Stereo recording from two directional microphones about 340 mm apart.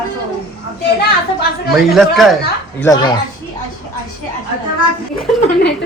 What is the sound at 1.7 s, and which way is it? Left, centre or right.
Speech, centre.